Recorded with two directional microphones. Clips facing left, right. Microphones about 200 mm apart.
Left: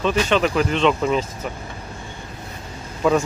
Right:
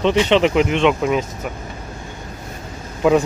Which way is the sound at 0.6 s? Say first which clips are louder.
Right 2 dB; 10° right (ahead or behind).